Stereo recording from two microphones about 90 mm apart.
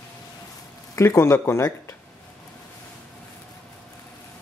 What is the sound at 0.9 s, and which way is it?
Speech, 30° left (ahead or behind).